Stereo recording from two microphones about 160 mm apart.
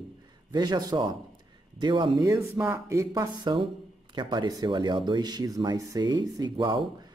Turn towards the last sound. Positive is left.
turn(degrees=-30)  # may be behind; listen again after turning